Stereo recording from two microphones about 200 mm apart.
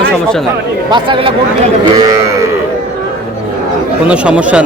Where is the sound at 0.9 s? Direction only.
25° right (ahead or behind).